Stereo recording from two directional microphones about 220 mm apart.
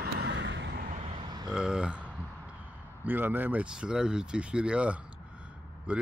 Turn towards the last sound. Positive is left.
turn(degrees=-5)  # may be behind; listen again after turning